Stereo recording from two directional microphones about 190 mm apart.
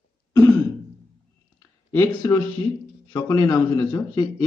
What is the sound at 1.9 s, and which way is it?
Speech, 15° left (ahead or behind).